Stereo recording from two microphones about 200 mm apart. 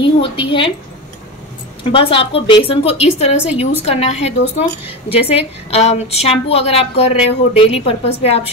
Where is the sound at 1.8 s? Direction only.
25° left (ahead or behind).